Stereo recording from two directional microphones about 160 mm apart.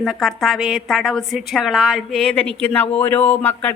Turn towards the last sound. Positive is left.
turn(degrees=10)  # may be behind; listen again after turning